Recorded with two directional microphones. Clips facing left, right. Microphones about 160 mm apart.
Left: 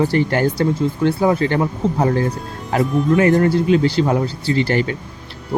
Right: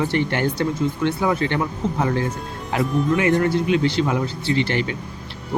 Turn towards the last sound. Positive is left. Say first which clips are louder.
# left 4 dB
turn(degrees=40)  # may be behind; listen again after turning